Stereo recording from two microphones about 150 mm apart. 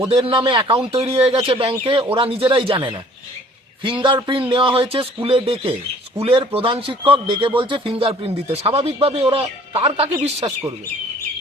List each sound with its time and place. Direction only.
0.2 s a man's voice: 30° right (ahead or behind)
4.0 s a man's voice: 35° right (ahead or behind)